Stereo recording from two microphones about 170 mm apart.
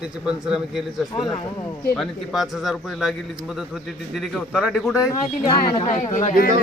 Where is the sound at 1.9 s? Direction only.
Centre (ahead or behind).